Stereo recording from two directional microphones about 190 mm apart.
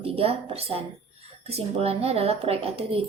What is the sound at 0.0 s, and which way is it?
Speech, 30° right (ahead or behind).